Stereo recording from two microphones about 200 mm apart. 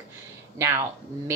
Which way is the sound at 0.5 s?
15° right (ahead or behind).